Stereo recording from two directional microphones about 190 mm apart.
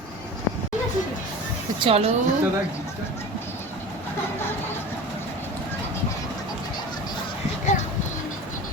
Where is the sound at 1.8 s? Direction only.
30° right (ahead or behind).